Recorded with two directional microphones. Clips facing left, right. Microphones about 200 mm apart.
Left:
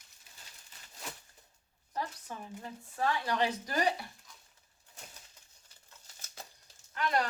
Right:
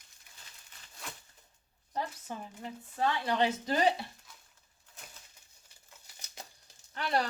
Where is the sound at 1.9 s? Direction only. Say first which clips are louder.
Right 2 dB; 25° right (ahead or behind).